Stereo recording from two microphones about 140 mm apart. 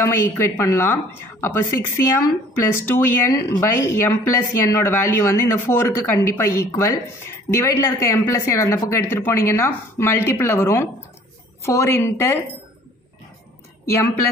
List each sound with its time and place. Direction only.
0.0 s speech: 20° left (ahead or behind)